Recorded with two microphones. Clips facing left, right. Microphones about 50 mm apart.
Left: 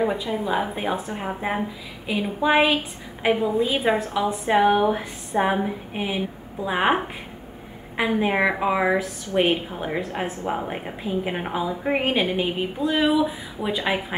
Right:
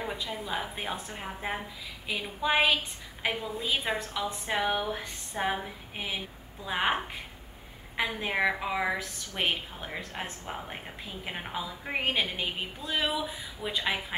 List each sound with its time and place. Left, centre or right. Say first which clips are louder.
0.1 s a woman's voice: left 10 dB; centre